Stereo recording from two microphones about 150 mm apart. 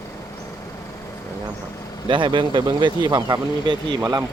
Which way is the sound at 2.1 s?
35° right (ahead or behind).